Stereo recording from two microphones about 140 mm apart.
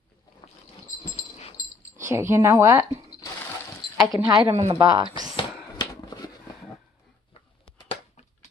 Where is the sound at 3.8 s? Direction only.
40° right (ahead or behind).